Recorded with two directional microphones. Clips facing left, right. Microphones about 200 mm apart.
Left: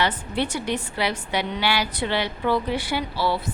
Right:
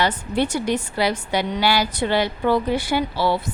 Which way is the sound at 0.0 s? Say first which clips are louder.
Right 3 dB; 45° right (ahead or behind).